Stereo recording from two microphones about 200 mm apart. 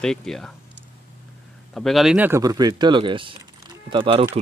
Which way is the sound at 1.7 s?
Centre (ahead or behind).